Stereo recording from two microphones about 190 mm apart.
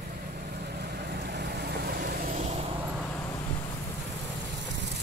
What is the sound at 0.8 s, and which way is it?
Vehicle, 55° right (ahead or behind).